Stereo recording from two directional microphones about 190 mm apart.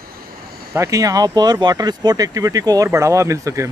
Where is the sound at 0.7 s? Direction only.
15° right (ahead or behind).